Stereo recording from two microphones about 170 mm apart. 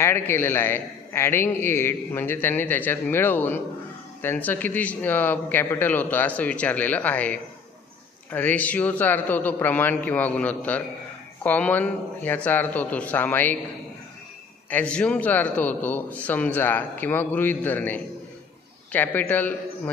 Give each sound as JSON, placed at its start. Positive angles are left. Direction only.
{"t": 0.0, "sound": "a man's voice", "side_deg": 15}
{"t": 14.7, "sound": "a man's voice", "side_deg": 10}